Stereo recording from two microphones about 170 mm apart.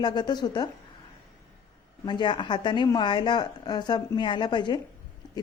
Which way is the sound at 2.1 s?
25° left (ahead or behind).